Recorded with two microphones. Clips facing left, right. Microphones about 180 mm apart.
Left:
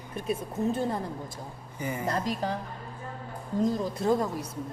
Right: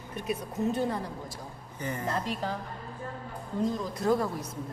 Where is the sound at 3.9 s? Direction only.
20° left (ahead or behind).